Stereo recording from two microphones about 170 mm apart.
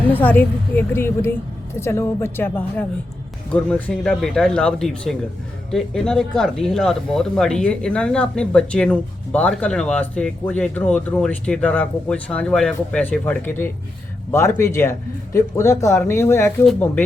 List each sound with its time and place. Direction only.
0.1 s speech: 10° left (ahead or behind)